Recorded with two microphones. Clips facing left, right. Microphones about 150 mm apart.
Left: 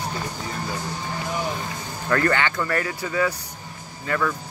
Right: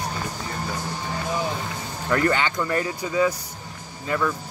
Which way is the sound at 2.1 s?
15° right (ahead or behind).